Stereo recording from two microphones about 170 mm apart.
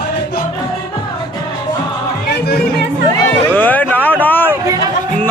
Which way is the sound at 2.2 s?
70° left (ahead or behind).